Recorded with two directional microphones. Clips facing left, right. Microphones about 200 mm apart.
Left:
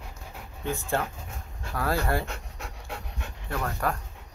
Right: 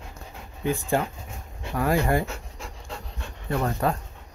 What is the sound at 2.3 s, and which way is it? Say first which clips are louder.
Pant: right 2 dB; centre (ahead or behind).